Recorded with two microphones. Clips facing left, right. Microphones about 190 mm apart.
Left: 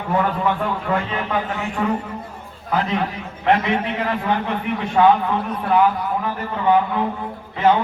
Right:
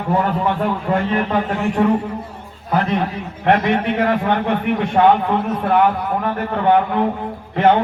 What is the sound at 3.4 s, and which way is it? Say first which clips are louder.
Speech: right 2 dB; 60° right (ahead or behind).